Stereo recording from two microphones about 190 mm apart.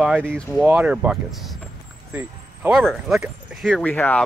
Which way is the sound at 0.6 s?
10° right (ahead or behind).